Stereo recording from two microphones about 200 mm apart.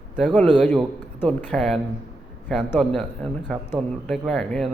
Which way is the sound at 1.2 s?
10° left (ahead or behind).